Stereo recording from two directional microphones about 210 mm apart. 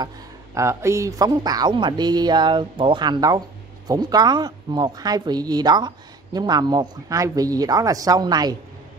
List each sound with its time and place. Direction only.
0.6 s speech: 15° right (ahead or behind)